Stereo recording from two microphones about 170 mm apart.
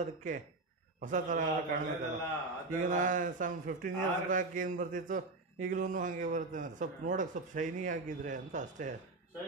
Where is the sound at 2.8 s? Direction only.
50° right (ahead or behind).